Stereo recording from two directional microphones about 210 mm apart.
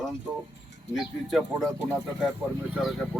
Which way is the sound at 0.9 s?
Centre (ahead or behind).